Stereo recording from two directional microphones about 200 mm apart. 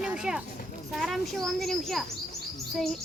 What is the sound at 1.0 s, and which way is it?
A child's voice, centre (ahead or behind).